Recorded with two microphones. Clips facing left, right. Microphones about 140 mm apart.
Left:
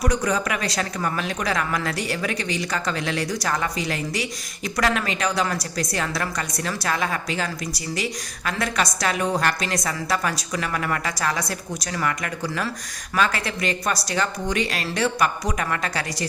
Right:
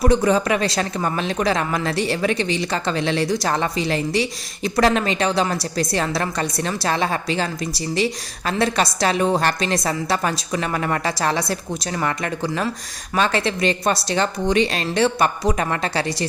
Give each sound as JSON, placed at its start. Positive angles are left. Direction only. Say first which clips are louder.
{"t": 0.0, "sound": "speech", "louder": "right 6 dB", "side_deg": -25}